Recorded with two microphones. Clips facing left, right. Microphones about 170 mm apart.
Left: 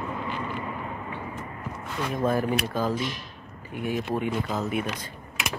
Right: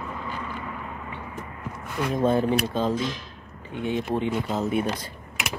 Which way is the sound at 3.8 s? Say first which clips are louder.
Right 2 dB; 25° right (ahead or behind).